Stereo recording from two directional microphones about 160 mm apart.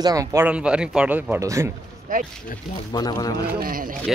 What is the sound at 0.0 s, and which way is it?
Speech, 20° right (ahead or behind).